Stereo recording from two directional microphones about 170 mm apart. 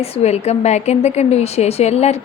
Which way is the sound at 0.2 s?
40° left (ahead or behind).